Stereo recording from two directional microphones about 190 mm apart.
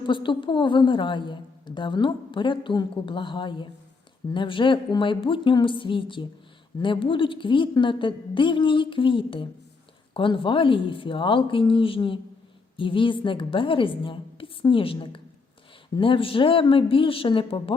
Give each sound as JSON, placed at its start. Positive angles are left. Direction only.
{"t": 0.0, "sound": "a woman's voice", "side_deg": 25}